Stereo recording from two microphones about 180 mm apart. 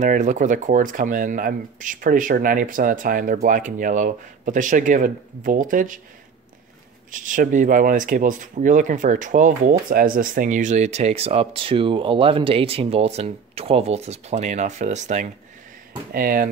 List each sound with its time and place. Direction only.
0.0 s speech: 45° right (ahead or behind)
7.1 s speech: 45° right (ahead or behind)
16.1 s speech: 55° right (ahead or behind)